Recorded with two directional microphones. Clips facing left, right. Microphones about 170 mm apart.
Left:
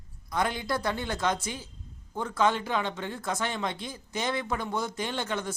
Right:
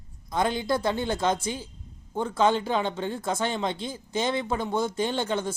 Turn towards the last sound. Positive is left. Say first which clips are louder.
# right 5 dB
turn(degrees=-30)  # may be behind; listen again after turning